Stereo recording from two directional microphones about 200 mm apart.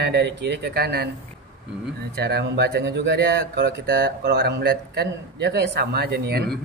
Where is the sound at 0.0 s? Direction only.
55° right (ahead or behind).